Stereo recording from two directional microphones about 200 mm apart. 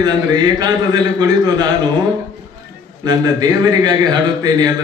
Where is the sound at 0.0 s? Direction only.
20° right (ahead or behind).